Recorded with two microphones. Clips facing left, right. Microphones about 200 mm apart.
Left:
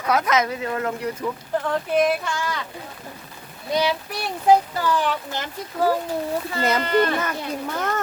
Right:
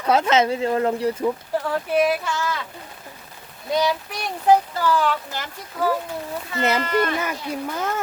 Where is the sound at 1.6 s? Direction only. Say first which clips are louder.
Even; 5° right (ahead or behind).